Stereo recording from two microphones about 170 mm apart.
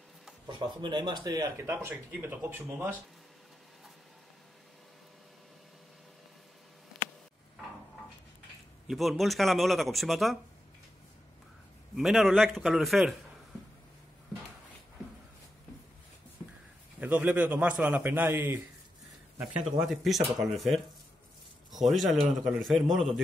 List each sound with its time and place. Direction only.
0.5 s speech: 30° right (ahead or behind); by 3.0 s 10° right (ahead or behind)
8.8 s a man's voice: centre (ahead or behind)
11.9 s a man's voice: centre (ahead or behind)
17.0 s a man's voice: 10° right (ahead or behind)